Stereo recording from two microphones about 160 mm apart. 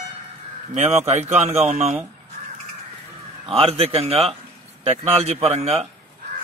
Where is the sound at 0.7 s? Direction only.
40° right (ahead or behind).